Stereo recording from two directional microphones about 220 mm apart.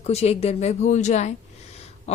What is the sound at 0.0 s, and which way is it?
A woman's voice, 30° left (ahead or behind).